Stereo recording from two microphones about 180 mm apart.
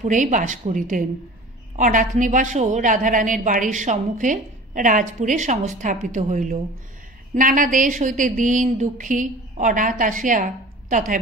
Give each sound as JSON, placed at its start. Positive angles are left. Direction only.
{"t": 0.0, "sound": "a woman's voice", "side_deg": -45}